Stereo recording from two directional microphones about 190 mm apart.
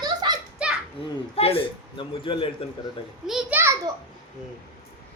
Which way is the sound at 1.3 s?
30° left (ahead or behind).